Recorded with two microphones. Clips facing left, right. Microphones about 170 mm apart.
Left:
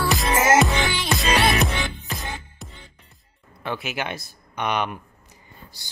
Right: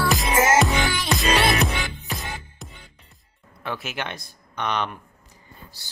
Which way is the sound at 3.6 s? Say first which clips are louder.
Left 2 dB; centre (ahead or behind).